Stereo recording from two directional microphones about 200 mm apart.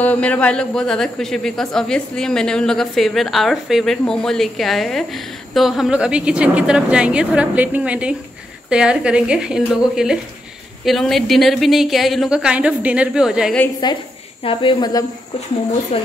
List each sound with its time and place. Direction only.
0.0 s a man's voice: 5° left (ahead or behind)
13.8 s speech: 20° left (ahead or behind)
15.9 s speech: 30° left (ahead or behind)